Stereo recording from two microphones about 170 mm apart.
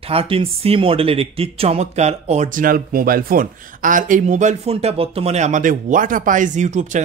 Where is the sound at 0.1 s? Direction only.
35° right (ahead or behind).